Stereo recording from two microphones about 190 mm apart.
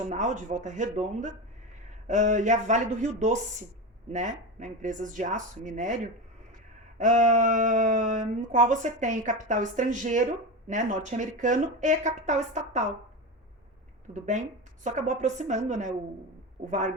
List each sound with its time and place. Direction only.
0.1 s speech: 40° right (ahead or behind)
7.0 s speech: 40° right (ahead or behind)
14.1 s speech: 40° right (ahead or behind)